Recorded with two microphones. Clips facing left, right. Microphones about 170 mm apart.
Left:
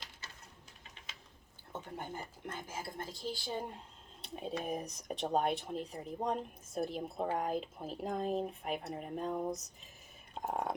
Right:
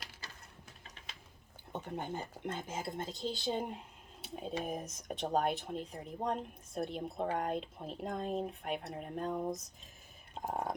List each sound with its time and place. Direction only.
1.7 s speech: 20° right (ahead or behind)
4.2 s speech: centre (ahead or behind)